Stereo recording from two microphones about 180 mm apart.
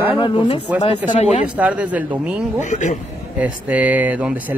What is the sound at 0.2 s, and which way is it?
Speech, 25° left (ahead or behind).